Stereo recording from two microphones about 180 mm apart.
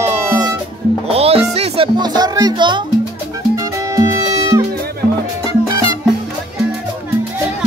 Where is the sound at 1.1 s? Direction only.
35° right (ahead or behind).